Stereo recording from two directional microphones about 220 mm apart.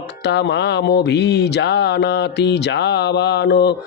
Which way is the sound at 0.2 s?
50° left (ahead or behind).